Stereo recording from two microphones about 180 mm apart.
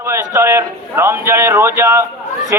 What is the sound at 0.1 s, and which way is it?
A man's voice, 15° right (ahead or behind).